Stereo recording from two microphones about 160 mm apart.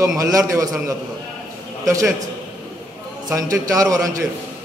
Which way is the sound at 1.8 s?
20° right (ahead or behind).